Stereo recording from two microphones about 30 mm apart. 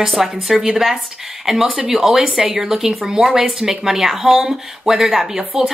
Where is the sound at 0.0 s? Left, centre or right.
Centre.